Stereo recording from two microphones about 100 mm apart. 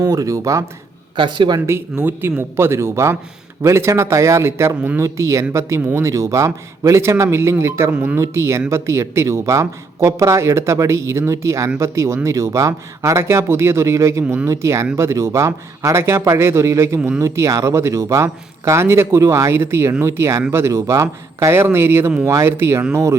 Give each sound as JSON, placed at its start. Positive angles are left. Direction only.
{"t": 0.0, "sound": "speech", "side_deg": -30}
{"t": 1.1, "sound": "speech", "side_deg": -55}
{"t": 1.5, "sound": "speech", "side_deg": -30}
{"t": 7.9, "sound": "speech", "side_deg": -15}